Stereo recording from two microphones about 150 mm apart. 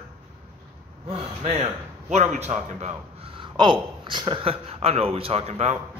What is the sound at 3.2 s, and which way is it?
Speech, 35° right (ahead or behind).